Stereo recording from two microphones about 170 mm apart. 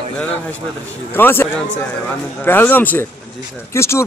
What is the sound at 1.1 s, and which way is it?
Speech, 15° left (ahead or behind).